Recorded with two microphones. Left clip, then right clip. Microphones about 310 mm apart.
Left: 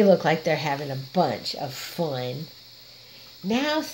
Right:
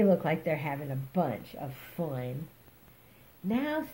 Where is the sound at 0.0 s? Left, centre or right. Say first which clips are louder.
Left 8 dB; left.